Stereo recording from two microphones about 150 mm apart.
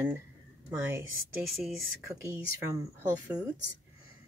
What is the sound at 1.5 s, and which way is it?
Speech, centre (ahead or behind).